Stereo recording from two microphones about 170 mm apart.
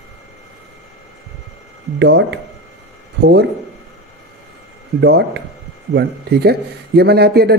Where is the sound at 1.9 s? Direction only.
85° right.